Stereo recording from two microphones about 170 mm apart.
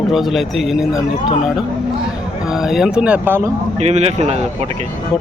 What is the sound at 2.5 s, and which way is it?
Speech, centre (ahead or behind).